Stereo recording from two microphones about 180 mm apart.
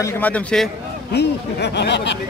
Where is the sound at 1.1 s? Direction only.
70° left (ahead or behind).